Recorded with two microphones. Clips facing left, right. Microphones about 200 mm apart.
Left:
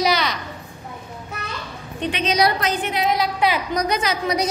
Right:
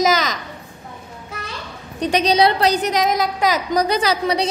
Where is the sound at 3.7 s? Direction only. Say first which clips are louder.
Right 4 dB; 30° right (ahead or behind).